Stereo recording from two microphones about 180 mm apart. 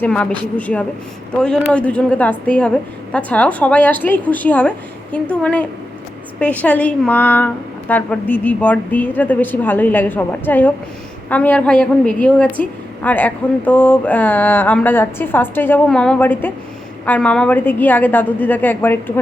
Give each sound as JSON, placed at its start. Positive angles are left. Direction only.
{"t": 0.0, "sound": "a woman's voice", "side_deg": 5}